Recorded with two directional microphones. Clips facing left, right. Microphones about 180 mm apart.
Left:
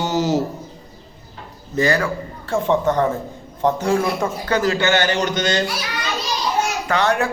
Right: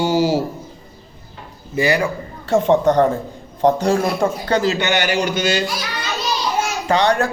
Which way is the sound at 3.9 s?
30° right (ahead or behind).